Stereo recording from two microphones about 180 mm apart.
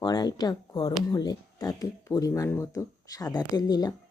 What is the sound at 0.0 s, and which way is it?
Speech, 20° left (ahead or behind).